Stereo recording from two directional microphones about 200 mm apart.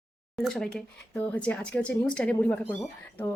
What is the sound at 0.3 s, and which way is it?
Speech, centre (ahead or behind).